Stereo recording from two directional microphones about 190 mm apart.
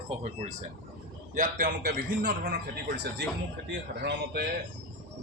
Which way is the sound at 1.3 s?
50° right (ahead or behind).